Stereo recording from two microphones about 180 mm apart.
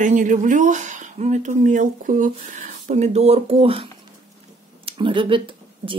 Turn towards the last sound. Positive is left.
turn(degrees=-30)  # may be behind; listen again after turning